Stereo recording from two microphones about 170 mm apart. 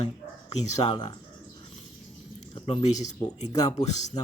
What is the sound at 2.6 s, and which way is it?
Speech, 35° left (ahead or behind).